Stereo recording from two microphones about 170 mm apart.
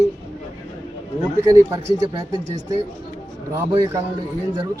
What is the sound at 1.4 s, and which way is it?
Speech, 15° right (ahead or behind).